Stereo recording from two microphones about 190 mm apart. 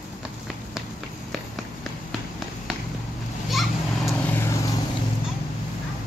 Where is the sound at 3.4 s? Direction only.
Centre (ahead or behind).